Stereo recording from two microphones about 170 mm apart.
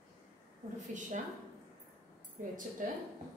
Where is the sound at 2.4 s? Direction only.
45° right (ahead or behind).